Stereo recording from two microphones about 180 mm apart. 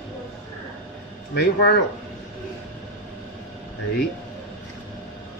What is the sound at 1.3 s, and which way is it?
Speech, 65° left (ahead or behind).